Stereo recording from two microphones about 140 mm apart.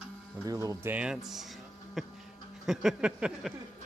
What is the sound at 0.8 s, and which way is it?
Speech, 10° right (ahead or behind).